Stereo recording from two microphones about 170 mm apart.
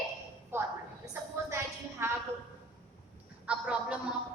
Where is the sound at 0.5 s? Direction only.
15° right (ahead or behind).